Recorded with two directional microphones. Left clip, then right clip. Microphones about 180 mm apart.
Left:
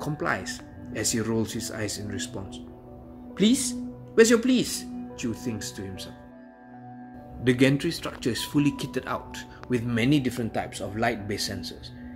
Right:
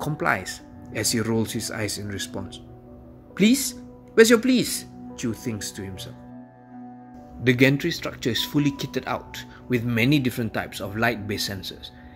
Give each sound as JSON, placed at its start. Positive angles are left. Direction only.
{"t": 0.0, "sound": "speech", "side_deg": -45}
{"t": 7.4, "sound": "speech", "side_deg": -25}